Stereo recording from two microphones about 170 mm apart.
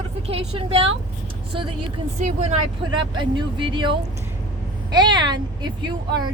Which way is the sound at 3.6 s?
30° right (ahead or behind).